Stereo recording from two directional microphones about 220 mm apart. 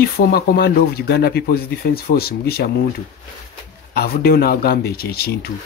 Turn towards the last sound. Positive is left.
turn(degrees=45)  # may be behind; listen again after turning